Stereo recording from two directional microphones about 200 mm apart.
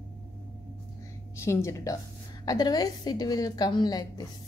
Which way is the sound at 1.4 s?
15° left (ahead or behind).